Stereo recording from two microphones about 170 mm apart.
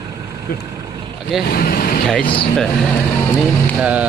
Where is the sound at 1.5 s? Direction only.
60° left (ahead or behind).